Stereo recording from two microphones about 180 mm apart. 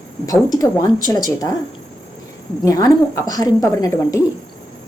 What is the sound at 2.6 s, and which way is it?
A woman's voice, 20° left (ahead or behind).